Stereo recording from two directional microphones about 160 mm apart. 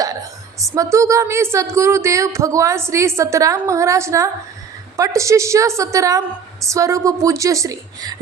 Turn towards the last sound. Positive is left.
turn(degrees=-20)  # may be behind; listen again after turning